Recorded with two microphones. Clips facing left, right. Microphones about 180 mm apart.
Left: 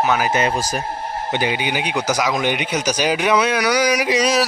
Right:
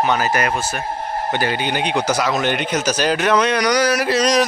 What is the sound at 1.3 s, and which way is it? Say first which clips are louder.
Speech: even; 15° left (ahead or behind).